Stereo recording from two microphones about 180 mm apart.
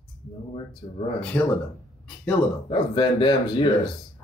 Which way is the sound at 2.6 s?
25° left (ahead or behind).